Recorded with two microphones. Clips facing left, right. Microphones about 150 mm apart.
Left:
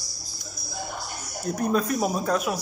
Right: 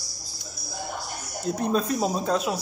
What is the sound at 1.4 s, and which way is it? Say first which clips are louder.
Speech: even; 25° right (ahead or behind).